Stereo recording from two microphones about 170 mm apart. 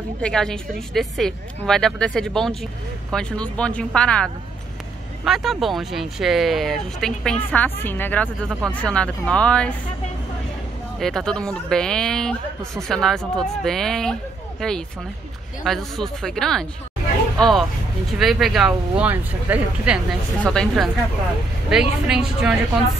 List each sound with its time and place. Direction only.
0.2 s speech: 5° left (ahead or behind)
11.0 s speech: centre (ahead or behind)
20.3 s speech: 5° left (ahead or behind)